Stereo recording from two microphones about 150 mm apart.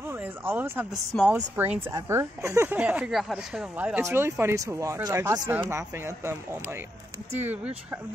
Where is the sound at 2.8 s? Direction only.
10° right (ahead or behind).